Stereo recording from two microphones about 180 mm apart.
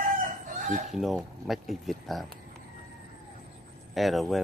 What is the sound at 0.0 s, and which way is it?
Chicken, 50° right (ahead or behind).